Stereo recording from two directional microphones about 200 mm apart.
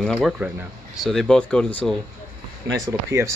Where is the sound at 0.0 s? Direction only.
Centre (ahead or behind).